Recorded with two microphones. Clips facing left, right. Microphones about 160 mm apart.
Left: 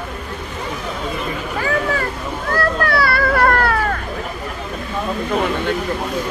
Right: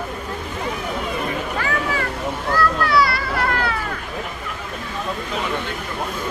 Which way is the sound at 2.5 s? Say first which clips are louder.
Even; 55° left (ahead or behind).